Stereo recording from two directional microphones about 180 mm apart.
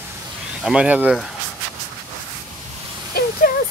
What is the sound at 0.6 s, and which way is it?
Speech, 5° right (ahead or behind).